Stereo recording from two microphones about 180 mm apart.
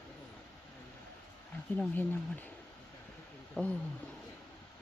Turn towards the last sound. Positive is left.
turn(degrees=10)  # may be behind; listen again after turning